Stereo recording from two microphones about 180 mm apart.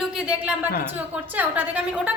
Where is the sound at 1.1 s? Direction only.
10° right (ahead or behind).